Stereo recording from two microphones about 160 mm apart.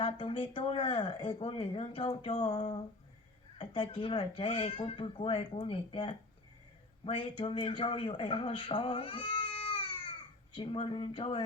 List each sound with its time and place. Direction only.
0.0 s speech: 35° left (ahead or behind)